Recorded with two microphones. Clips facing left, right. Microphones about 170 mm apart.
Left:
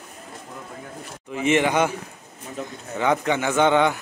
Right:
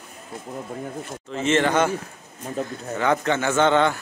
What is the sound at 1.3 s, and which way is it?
Speech, 15° left (ahead or behind).